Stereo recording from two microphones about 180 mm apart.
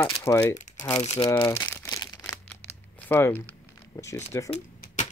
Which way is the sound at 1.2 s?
20° left (ahead or behind).